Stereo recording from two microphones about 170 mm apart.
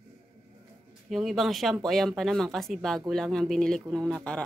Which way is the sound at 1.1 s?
Centre (ahead or behind).